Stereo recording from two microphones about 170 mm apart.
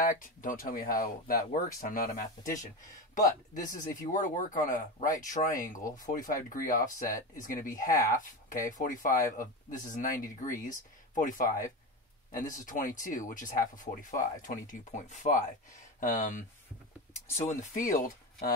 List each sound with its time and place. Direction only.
0.0 s speech: 50° left (ahead or behind)